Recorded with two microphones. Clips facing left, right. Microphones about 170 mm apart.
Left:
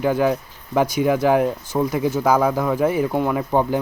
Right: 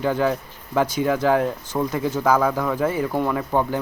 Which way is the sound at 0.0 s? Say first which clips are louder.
Left 2 dB; 10° left (ahead or behind).